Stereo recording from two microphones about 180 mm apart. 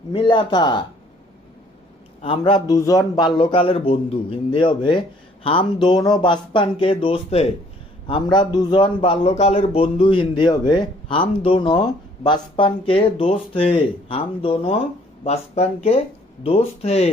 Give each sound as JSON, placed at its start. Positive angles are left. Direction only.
{"t": 0.1, "sound": "a man's voice", "side_deg": 30}
{"t": 2.2, "sound": "a man's voice", "side_deg": 30}